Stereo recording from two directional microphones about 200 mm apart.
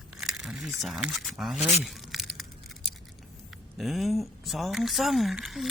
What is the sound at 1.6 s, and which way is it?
Speech, 30° left (ahead or behind).